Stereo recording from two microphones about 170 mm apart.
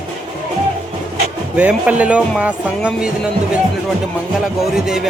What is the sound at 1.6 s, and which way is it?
Speech, 10° right (ahead or behind).